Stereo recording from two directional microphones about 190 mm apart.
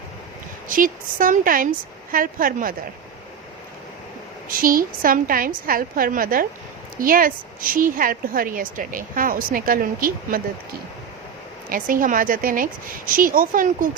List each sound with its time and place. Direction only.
0.7 s a woman's voice: 45° right (ahead or behind)
4.4 s a woman's voice: 50° right (ahead or behind)
11.7 s a woman's voice: 45° right (ahead or behind)